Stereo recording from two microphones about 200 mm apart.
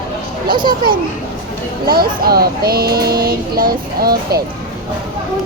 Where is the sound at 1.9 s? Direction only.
50° right (ahead or behind).